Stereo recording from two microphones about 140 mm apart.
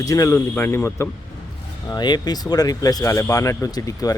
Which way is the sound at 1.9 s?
30° left (ahead or behind).